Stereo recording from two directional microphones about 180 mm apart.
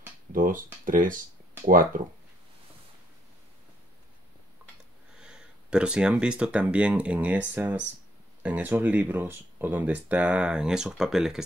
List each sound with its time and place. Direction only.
0.3 s speech: 50° right (ahead or behind)
5.1 s speech: 5° right (ahead or behind)